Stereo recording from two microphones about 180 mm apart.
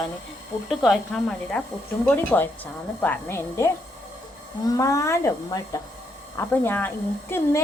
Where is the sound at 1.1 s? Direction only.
5° left (ahead or behind).